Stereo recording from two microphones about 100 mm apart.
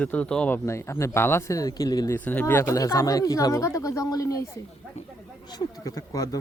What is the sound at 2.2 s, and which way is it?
Speech, 20° left (ahead or behind).